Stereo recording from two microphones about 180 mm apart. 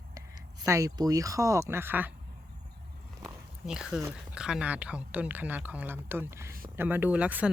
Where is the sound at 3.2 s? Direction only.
5° right (ahead or behind).